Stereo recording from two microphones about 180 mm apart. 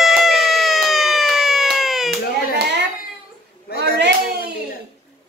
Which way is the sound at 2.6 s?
70° right (ahead or behind).